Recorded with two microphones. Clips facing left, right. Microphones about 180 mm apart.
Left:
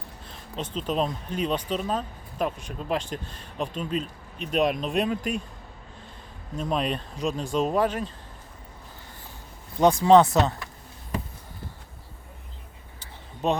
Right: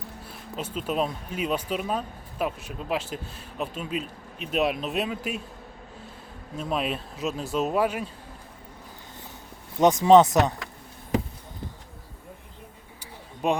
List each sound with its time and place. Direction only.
0.3 s speech: 5° right (ahead or behind)
6.6 s speech: 5° right (ahead or behind)
9.8 s speech: 20° right (ahead or behind)
13.0 s a sound: 10° right (ahead or behind)